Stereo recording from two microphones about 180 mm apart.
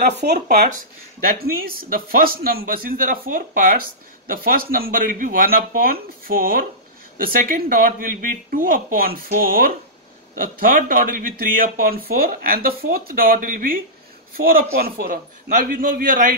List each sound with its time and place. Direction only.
0.0 s a man's voice: 60° right (ahead or behind)